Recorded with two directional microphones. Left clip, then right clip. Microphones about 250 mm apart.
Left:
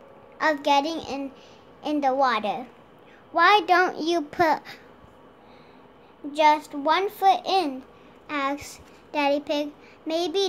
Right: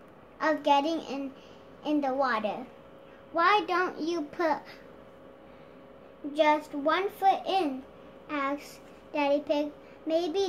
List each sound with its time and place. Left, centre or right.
0.4 s a child's voice: left
6.3 s a child's voice: left